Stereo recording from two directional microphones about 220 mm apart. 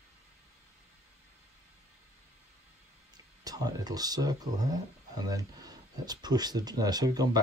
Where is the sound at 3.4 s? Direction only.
15° right (ahead or behind).